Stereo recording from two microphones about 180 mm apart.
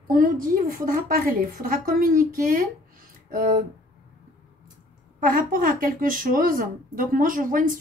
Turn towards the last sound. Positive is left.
turn(degrees=-50)  # may be behind; listen again after turning